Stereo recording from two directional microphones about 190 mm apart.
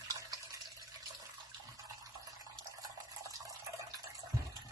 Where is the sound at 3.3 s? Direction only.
20° right (ahead or behind).